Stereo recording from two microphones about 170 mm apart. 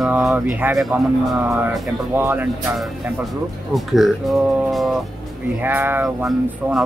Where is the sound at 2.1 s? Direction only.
10° right (ahead or behind).